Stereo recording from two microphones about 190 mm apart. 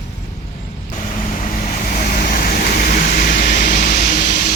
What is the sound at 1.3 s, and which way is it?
Vehicle, 45° left (ahead or behind).